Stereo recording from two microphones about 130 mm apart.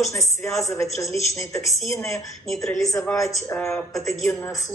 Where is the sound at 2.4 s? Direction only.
5° left (ahead or behind).